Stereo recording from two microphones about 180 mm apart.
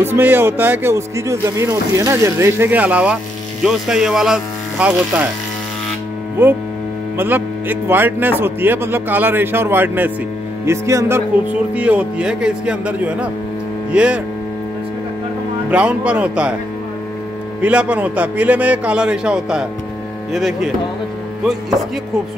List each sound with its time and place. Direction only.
0.0 s speech: 10° right (ahead or behind)
6.4 s speech: 10° right (ahead or behind)
15.7 s speech: 5° right (ahead or behind)
17.6 s speech: 5° right (ahead or behind)